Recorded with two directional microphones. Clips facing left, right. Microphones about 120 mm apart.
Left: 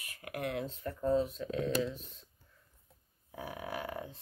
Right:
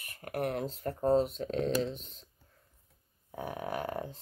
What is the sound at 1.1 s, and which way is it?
Speech, 80° right.